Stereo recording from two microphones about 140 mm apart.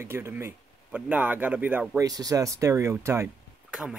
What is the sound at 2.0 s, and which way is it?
Speech, 25° right (ahead or behind).